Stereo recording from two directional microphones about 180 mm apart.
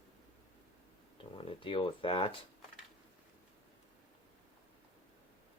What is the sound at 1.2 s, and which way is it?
Speech, 30° left (ahead or behind).